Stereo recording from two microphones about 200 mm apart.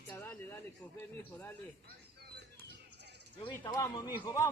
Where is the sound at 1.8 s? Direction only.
55° right (ahead or behind).